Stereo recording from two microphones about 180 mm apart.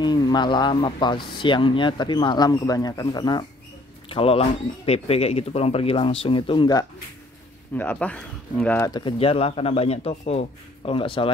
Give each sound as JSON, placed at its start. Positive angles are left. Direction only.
{"t": 0.0, "sound": "speech", "side_deg": 25}
{"t": 7.7, "sound": "speech", "side_deg": 10}
{"t": 8.9, "sound": "speech", "side_deg": 30}